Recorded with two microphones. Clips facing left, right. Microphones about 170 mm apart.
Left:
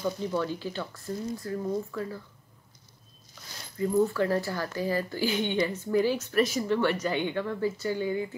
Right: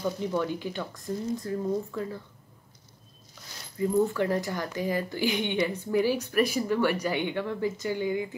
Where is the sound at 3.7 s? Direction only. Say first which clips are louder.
Even; 15° right (ahead or behind).